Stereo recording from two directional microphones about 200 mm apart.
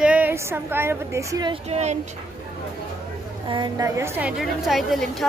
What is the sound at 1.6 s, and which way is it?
Speech, 35° right (ahead or behind).